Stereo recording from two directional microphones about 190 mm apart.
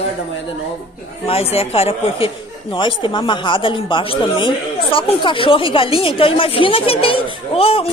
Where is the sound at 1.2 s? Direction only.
30° left (ahead or behind).